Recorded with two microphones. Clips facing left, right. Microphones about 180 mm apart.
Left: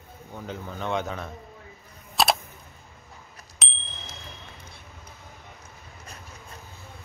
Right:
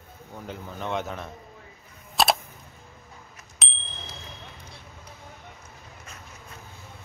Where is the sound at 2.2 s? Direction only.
Centre (ahead or behind).